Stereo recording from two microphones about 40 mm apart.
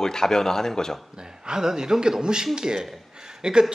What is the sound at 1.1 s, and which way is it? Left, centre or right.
A man's voice, centre.